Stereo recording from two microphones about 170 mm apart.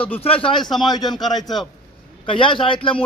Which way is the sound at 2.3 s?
30° left (ahead or behind).